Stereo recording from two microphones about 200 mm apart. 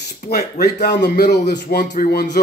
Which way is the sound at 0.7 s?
55° left (ahead or behind).